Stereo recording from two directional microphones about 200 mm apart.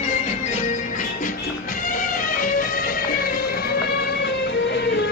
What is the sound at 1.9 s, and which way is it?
Music, 40° left (ahead or behind).